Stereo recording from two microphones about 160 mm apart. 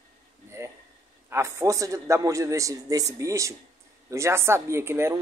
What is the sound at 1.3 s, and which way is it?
A man's voice, 20° right (ahead or behind).